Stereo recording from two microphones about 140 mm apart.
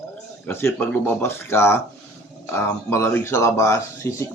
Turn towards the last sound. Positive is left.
turn(degrees=20)  # may be behind; listen again after turning